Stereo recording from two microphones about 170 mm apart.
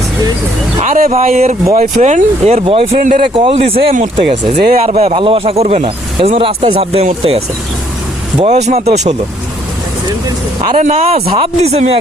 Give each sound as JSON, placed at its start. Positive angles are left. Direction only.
{"t": 0.9, "sound": "speech", "side_deg": -45}
{"t": 3.0, "sound": "speech", "side_deg": -50}
{"t": 3.3, "sound": "speech", "side_deg": -35}
{"t": 8.6, "sound": "speech", "side_deg": -70}
{"t": 10.2, "sound": "speech", "side_deg": -25}
{"t": 10.8, "sound": "speech", "side_deg": -45}